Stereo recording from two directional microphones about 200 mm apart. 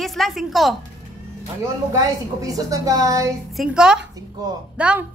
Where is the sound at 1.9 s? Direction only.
15° right (ahead or behind).